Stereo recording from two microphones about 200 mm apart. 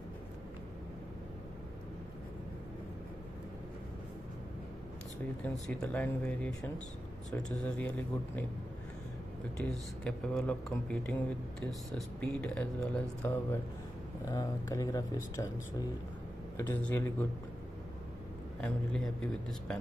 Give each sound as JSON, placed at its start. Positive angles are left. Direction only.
{"t": 5.4, "sound": "speech", "side_deg": 5}
{"t": 7.6, "sound": "speech", "side_deg": 5}
{"t": 9.6, "sound": "speech", "side_deg": 5}
{"t": 16.5, "sound": "speech", "side_deg": 10}
{"t": 18.6, "sound": "speech", "side_deg": 5}